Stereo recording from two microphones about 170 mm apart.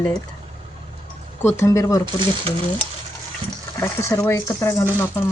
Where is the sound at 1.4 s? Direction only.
15° left (ahead or behind).